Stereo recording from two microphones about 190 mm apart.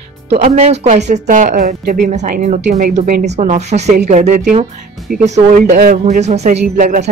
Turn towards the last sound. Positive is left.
turn(degrees=-40)  # may be behind; listen again after turning